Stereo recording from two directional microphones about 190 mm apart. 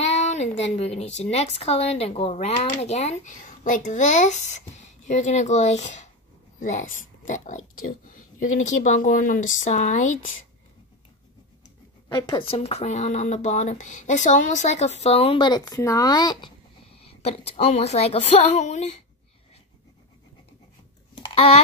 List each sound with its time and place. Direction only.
0.0 s a woman's voice: 35° left (ahead or behind)
12.1 s speech: 20° left (ahead or behind); by 18.9 s 35° left (ahead or behind)